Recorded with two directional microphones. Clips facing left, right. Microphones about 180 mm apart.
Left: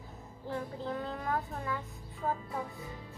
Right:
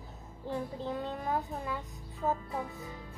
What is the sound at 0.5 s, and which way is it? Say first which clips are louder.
A child's voice: right 1 dB; 20° right (ahead or behind).